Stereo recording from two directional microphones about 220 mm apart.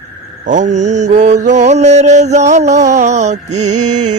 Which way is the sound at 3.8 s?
90° right.